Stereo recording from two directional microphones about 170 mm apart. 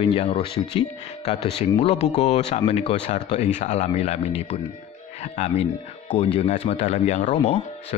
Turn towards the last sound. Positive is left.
turn(degrees=40)  # may be behind; listen again after turning